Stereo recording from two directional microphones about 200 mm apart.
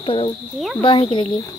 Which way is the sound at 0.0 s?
25° left (ahead or behind).